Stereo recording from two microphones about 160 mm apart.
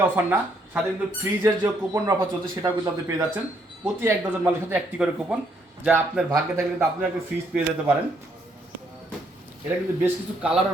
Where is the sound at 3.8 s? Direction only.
15° right (ahead or behind).